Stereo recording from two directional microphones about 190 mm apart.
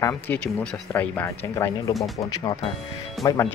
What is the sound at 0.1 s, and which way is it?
Speech, 5° left (ahead or behind).